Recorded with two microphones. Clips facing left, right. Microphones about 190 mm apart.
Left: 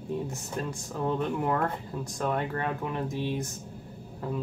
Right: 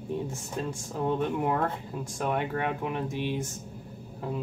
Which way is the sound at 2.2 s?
15° right (ahead or behind).